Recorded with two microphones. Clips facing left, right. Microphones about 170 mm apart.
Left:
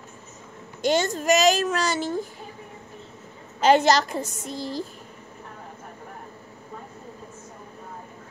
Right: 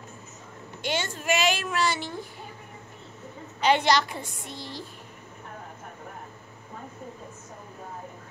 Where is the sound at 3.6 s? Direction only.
45° left (ahead or behind).